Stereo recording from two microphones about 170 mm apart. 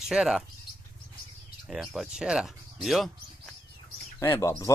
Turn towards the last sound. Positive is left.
turn(degrees=20)  # may be behind; listen again after turning